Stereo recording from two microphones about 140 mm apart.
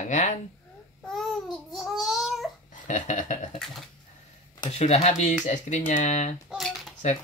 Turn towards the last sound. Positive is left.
turn(degrees=0)  # may be behind; listen again after turning